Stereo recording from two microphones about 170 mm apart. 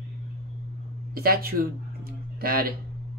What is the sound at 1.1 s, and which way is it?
A woman's voice, 60° right (ahead or behind).